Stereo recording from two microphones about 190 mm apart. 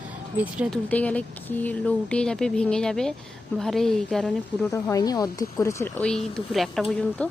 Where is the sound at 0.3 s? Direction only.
5° right (ahead or behind).